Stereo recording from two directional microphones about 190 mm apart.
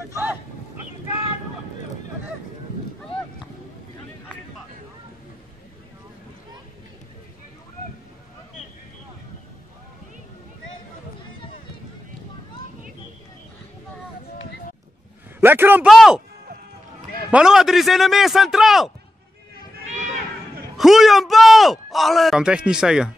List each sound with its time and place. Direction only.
0.1 s a man's voice: 10° right (ahead or behind)
15.4 s a man's voice: 10° right (ahead or behind)
15.9 s a man's voice: centre (ahead or behind)
17.3 s a man's voice: 5° right (ahead or behind)
19.9 s run: 40° right (ahead or behind)
20.7 s a man's voice: centre (ahead or behind)